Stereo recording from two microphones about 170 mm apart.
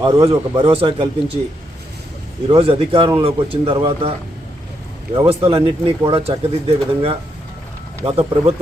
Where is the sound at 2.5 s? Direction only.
35° right (ahead or behind).